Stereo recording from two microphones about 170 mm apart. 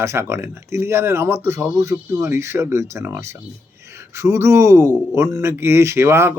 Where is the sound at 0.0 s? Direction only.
15° right (ahead or behind).